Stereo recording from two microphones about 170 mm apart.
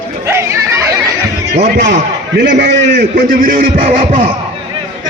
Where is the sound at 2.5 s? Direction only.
85° right.